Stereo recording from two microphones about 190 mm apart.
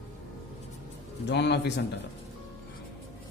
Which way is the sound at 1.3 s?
65° left (ahead or behind).